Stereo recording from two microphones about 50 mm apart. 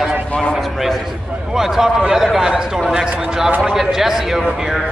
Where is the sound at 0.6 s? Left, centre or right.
Centre.